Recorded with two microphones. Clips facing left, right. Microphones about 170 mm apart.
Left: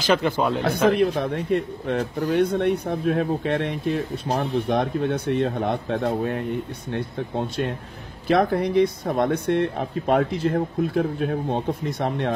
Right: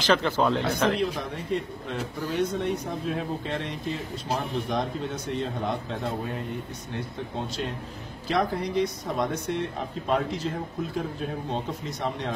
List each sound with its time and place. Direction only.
0.0 s a man's voice: 10° left (ahead or behind)
0.9 s speech: 60° left (ahead or behind)